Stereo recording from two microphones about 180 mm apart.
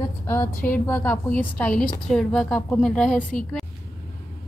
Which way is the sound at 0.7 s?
10° left (ahead or behind).